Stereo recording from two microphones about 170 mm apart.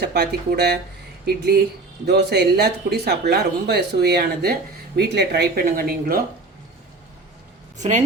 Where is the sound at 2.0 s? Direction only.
75° right (ahead or behind).